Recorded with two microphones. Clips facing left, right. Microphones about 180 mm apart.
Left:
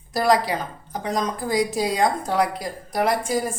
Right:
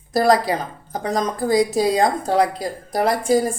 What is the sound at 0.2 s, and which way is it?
Speech, 35° right (ahead or behind).